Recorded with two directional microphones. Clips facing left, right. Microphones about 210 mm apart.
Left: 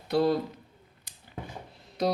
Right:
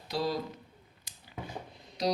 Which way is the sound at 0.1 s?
55° left (ahead or behind).